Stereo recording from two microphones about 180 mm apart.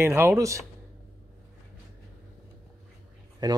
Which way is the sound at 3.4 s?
25° right (ahead or behind).